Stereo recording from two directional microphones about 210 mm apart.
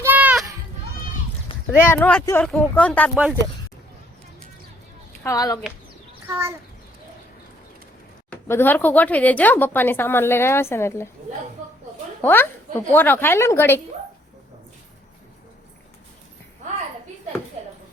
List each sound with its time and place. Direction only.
0.0 s children playing: 10° right (ahead or behind)
1.8 s speech: 10° left (ahead or behind)
5.2 s speech: 15° left (ahead or behind)
6.2 s a child's voice: 10° right (ahead or behind)
8.3 s speech: 10° left (ahead or behind)
12.2 s speech: 10° left (ahead or behind)